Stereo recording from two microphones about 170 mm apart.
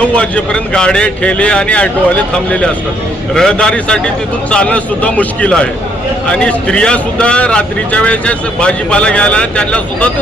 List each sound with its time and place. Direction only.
0.0 s a man's voice: 5° left (ahead or behind)